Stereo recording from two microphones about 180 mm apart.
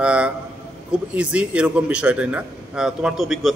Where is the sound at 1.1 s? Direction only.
5° right (ahead or behind).